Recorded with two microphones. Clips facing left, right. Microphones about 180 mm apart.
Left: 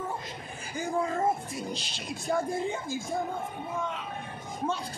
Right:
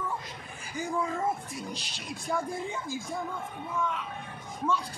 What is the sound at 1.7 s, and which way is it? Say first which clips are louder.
Speech: left 3 dB; 25° left (ahead or behind).